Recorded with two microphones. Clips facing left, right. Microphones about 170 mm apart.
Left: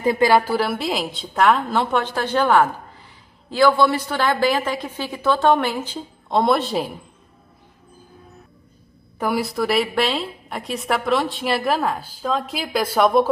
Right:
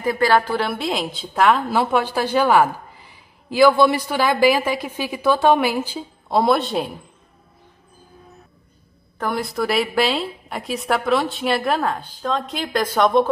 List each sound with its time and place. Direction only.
0.0 s a woman's voice: 20° left (ahead or behind)
0.4 s a woman's voice: 5° left (ahead or behind)
9.2 s a woman's voice: 5° left (ahead or behind)